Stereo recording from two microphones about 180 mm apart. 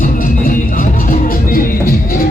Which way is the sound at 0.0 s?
50° left (ahead or behind).